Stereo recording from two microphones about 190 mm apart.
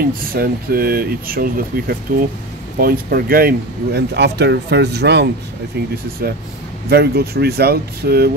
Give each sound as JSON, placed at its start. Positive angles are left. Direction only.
{"t": 0.0, "sound": "speech", "side_deg": -50}